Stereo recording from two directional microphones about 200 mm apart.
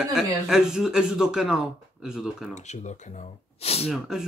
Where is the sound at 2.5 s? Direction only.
35° left (ahead or behind).